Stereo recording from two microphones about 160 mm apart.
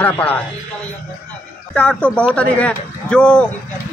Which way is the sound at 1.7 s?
5° left (ahead or behind).